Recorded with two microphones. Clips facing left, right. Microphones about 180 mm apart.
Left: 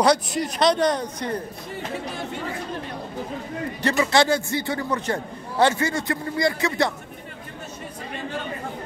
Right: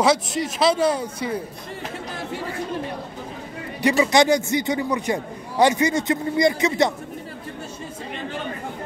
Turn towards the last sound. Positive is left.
turn(degrees=-20)  # may be behind; listen again after turning